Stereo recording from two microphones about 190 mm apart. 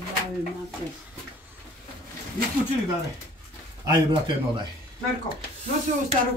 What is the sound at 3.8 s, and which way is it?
Speech, 20° right (ahead or behind).